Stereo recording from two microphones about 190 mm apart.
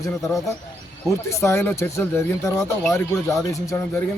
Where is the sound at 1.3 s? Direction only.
15° left (ahead or behind).